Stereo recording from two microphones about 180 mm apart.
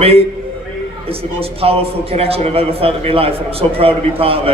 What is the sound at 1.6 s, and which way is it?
A man's voice, 35° right (ahead or behind).